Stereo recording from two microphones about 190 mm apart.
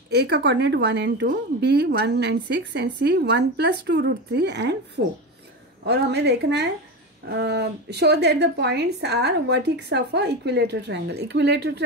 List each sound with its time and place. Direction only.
0.1 s speech: 60° right (ahead or behind)